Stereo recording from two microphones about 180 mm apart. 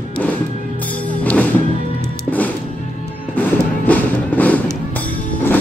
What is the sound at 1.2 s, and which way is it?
Music, 10° left (ahead or behind).